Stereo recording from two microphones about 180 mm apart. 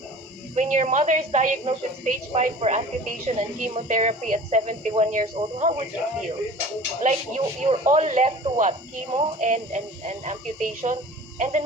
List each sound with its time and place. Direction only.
0.5 s a woman's voice: 40° right (ahead or behind)
7.0 s a woman's voice: 40° right (ahead or behind)